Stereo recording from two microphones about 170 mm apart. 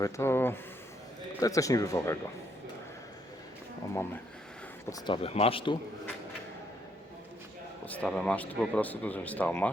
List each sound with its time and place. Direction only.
0.0 s speech: 15° left (ahead or behind)
4.9 s speech: 30° left (ahead or behind)
7.9 s speech: 10° left (ahead or behind)